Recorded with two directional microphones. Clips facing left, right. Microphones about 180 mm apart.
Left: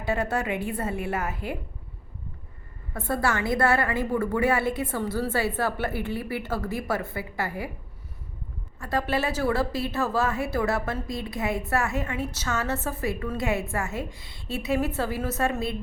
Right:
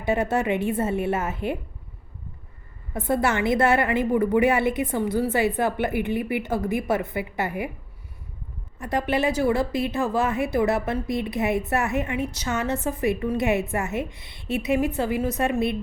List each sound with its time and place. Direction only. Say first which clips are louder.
0.0 s a woman's voice: right 4 dB; 20° right (ahead or behind)
2.9 s a woman's voice: right 4 dB; 20° right (ahead or behind)
8.8 s a woman's voice: right 3 dB; 20° right (ahead or behind)